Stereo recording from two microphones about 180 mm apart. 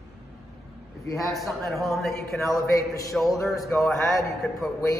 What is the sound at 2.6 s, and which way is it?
Speech, 20° left (ahead or behind).